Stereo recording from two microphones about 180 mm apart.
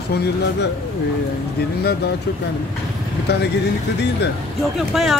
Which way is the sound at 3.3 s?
65° left (ahead or behind).